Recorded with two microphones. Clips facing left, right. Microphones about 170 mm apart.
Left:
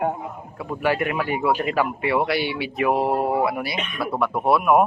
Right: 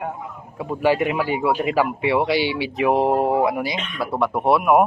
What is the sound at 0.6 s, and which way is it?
Speech, 15° right (ahead or behind).